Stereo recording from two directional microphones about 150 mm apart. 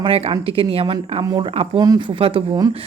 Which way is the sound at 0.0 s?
40° right (ahead or behind).